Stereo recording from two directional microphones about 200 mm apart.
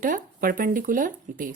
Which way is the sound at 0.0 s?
45° right (ahead or behind).